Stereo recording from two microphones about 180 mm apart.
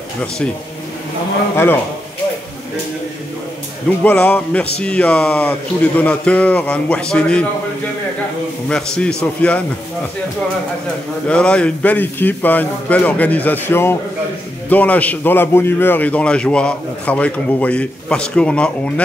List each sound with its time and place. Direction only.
4.0 s a man's voice: 5° left (ahead or behind)
8.6 s a man's voice: 5° left (ahead or behind)
11.2 s a man's voice: 5° left (ahead or behind)